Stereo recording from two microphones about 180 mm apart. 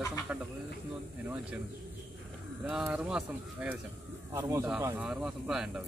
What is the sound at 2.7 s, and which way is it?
A man's voice, 5° right (ahead or behind).